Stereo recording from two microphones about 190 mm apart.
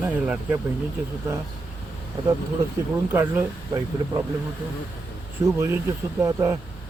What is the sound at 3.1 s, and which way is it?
Speech, 10° right (ahead or behind).